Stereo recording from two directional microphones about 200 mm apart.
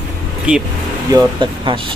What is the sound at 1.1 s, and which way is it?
Speech, 25° right (ahead or behind).